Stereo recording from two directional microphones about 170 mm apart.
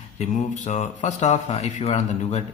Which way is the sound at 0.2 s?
45° left (ahead or behind).